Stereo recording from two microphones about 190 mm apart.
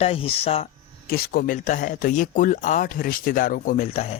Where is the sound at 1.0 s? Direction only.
55° left (ahead or behind).